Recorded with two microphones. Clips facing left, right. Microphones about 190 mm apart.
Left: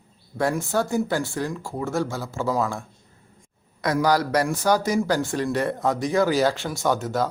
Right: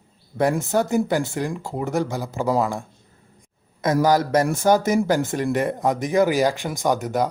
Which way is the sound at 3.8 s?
20° right (ahead or behind).